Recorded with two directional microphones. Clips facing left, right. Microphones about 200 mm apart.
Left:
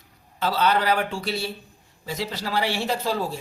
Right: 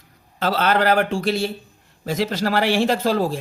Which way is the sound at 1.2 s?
90° right.